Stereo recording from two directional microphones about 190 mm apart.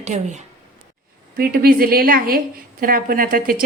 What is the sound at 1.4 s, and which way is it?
Speech, 50° right (ahead or behind).